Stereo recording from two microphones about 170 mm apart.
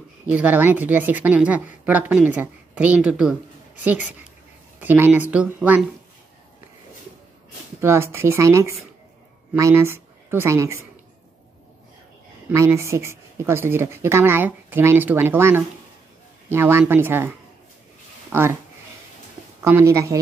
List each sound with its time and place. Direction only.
0.3 s speech: 10° right (ahead or behind)
7.8 s a woman's voice: 15° right (ahead or behind)
12.4 s speech: 15° right (ahead or behind)
18.3 s speech: 15° right (ahead or behind)
19.6 s speech: 15° right (ahead or behind)